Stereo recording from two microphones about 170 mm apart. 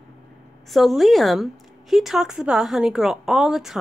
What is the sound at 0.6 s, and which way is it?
A woman's voice, centre (ahead or behind).